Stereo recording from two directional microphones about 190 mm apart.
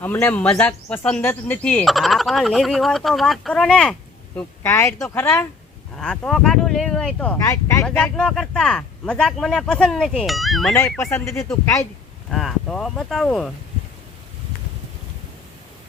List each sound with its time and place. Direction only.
0.0 s cricket: 10° left (ahead or behind)
4.4 s speech: 15° left (ahead or behind)
6.0 s cricket: 5° left (ahead or behind)
7.9 s cricket: 5° left (ahead or behind)
11.0 s speech: 15° left (ahead or behind)
12.3 s cricket: centre (ahead or behind)